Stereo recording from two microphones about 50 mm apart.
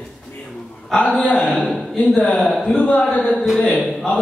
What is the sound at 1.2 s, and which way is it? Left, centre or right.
Speech, centre.